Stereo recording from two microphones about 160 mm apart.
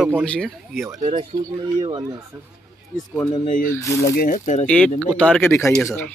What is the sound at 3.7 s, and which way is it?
Speech, 20° left (ahead or behind).